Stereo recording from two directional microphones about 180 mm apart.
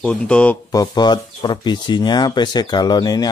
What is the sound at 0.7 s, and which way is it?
Speech, 20° left (ahead or behind).